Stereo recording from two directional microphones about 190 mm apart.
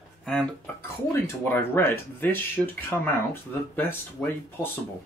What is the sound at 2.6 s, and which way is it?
Speech, 5° right (ahead or behind).